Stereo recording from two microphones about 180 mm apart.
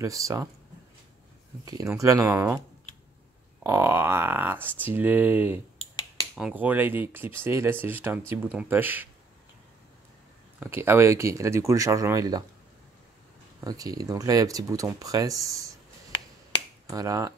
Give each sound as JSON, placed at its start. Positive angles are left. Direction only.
{"t": 0.0, "sound": "speech", "side_deg": -15}
{"t": 1.7, "sound": "speech", "side_deg": -20}
{"t": 3.6, "sound": "speech", "side_deg": -15}
{"t": 10.6, "sound": "speech", "side_deg": -15}
{"t": 13.7, "sound": "speech", "side_deg": -20}
{"t": 16.9, "sound": "speech", "side_deg": -20}